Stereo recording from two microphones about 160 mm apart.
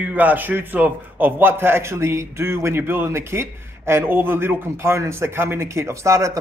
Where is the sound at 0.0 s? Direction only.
10° right (ahead or behind).